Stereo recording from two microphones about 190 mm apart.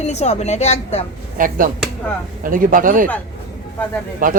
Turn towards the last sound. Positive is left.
turn(degrees=-45)  # may be behind; listen again after turning